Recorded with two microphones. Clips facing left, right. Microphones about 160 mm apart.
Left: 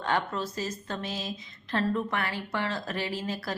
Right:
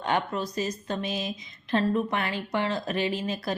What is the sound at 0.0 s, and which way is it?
A woman's voice, 15° right (ahead or behind).